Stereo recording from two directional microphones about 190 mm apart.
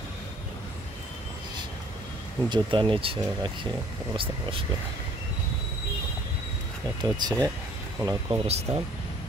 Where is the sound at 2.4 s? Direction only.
25° right (ahead or behind).